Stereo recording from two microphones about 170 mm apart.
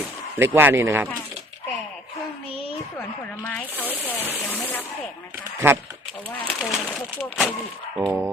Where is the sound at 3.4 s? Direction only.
10° left (ahead or behind).